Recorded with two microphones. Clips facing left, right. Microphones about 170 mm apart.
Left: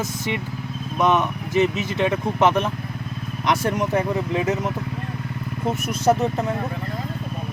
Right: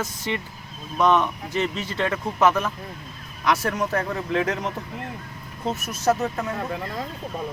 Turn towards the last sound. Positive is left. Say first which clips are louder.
# left 3 dB
turn(degrees=20)  # may be behind; listen again after turning